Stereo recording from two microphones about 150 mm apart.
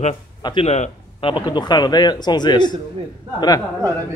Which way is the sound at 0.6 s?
45° left (ahead or behind).